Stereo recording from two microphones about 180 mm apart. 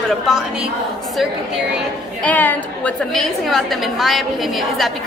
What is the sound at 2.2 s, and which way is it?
A woman's voice, 10° left (ahead or behind).